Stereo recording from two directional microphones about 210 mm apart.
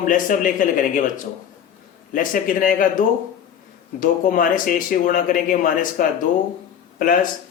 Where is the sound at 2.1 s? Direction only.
40° left (ahead or behind).